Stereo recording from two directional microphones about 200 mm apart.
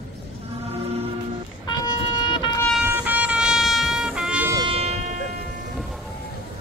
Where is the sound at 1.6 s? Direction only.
20° left (ahead or behind).